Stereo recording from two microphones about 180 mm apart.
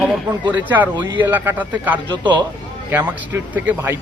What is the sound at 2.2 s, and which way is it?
Speech, 25° right (ahead or behind).